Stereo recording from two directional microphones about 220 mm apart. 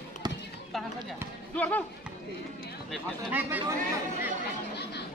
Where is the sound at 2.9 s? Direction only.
10° right (ahead or behind).